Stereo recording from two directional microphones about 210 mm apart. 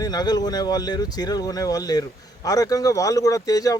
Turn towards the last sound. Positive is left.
turn(degrees=15)  # may be behind; listen again after turning